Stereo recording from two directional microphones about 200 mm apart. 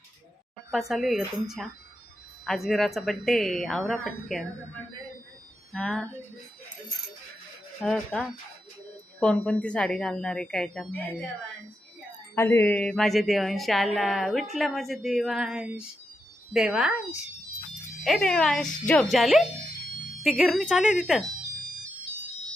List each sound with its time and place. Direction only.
0.7 s speech: centre (ahead or behind)
5.7 s speech: 5° left (ahead or behind)
7.8 s speech: 5° left (ahead or behind)
12.3 s speech: 10° left (ahead or behind)
18.0 s speech: centre (ahead or behind)